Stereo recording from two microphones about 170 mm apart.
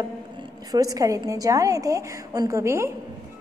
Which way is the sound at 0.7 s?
20° right (ahead or behind).